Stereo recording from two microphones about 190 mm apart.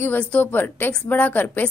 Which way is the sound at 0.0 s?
10° left (ahead or behind).